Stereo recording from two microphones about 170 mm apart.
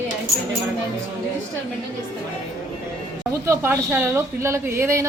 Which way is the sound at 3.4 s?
15° right (ahead or behind).